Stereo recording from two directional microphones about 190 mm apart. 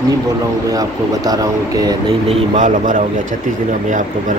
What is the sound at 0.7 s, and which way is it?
Speech, 20° right (ahead or behind).